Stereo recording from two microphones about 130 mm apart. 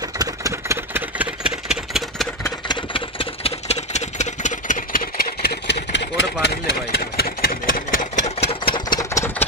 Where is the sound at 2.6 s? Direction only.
40° left (ahead or behind); by 5.0 s 75° left (ahead or behind).